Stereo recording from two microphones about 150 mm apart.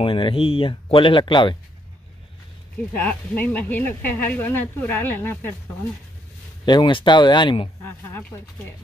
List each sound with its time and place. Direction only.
0.0 s speech: 35° left (ahead or behind)
3.0 s speech: 10° left (ahead or behind)
6.6 s speech: 30° left (ahead or behind)
8.1 s speech: 15° left (ahead or behind)